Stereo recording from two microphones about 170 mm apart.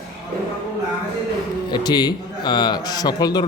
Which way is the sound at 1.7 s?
25° left (ahead or behind).